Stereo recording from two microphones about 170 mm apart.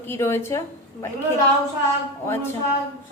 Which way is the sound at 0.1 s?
15° left (ahead or behind).